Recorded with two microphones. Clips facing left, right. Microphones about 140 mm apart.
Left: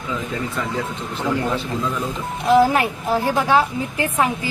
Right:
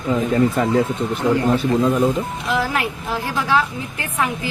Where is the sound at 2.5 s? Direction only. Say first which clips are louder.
Left 8 dB; 35° left (ahead or behind).